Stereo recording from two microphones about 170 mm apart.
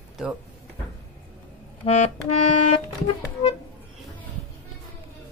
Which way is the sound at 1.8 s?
35° left (ahead or behind).